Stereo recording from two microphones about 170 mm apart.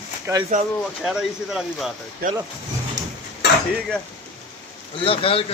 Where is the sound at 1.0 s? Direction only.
5° right (ahead or behind).